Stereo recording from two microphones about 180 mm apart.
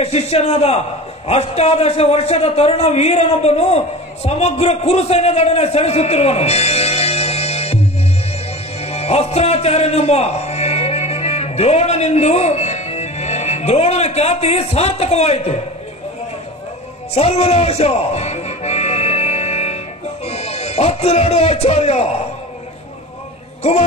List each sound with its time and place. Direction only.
0.0 s a man's voice: 35° left (ahead or behind)
8.8 s a man's voice: 35° left (ahead or behind)
17.1 s music: 35° left (ahead or behind)
20.2 s speech: 35° left (ahead or behind)